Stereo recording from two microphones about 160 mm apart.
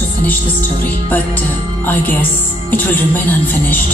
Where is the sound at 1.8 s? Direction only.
10° left (ahead or behind).